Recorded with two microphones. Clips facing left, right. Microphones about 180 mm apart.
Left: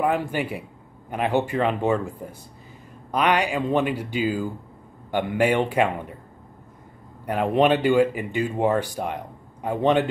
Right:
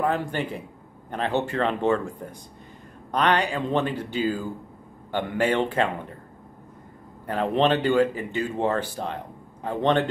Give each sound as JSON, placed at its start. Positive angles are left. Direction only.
{"t": 0.0, "sound": "speech", "side_deg": 10}
{"t": 3.1, "sound": "speech", "side_deg": 10}
{"t": 7.2, "sound": "speech", "side_deg": 10}